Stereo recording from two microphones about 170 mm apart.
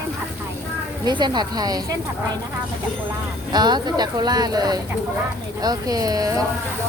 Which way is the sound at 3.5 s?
25° right (ahead or behind).